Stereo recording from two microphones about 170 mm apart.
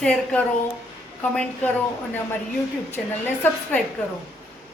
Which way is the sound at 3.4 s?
10° left (ahead or behind).